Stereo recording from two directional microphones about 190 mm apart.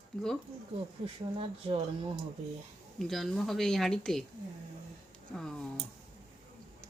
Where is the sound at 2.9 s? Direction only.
Centre (ahead or behind).